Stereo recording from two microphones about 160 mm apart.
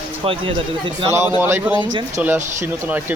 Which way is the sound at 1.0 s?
15° right (ahead or behind).